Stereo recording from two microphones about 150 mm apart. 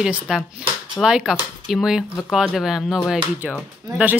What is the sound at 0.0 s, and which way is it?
Speech, 5° right (ahead or behind).